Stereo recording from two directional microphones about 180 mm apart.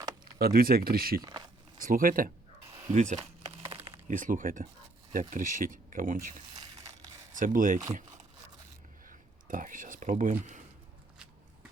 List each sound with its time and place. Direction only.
0.3 s speech: 55° right (ahead or behind)
1.2 s speech: 20° right (ahead or behind)
1.8 s speech: 50° right (ahead or behind)
6.5 s a sound: 20° right (ahead or behind)
7.3 s speech: 50° right (ahead or behind)
9.0 s speech: 50° right (ahead or behind)